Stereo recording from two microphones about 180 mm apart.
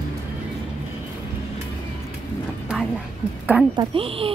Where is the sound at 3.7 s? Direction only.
30° right (ahead or behind).